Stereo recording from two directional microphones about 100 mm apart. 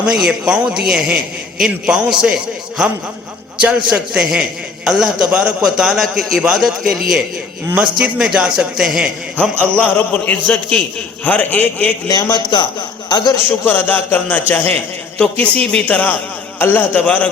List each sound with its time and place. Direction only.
0.0 s a man's voice: 10° right (ahead or behind)
9.4 s a man's voice: 15° left (ahead or behind)
12.0 s a man's voice: 40° left (ahead or behind)
13.7 s a man's voice: 20° left (ahead or behind)